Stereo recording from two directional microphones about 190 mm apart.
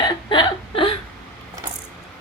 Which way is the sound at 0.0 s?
25° left (ahead or behind).